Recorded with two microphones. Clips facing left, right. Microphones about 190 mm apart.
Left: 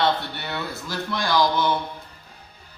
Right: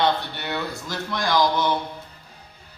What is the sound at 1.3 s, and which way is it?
Speech, 15° right (ahead or behind).